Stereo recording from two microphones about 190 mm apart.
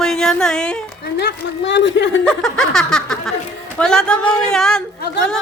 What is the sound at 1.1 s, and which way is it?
Speech, 65° left (ahead or behind).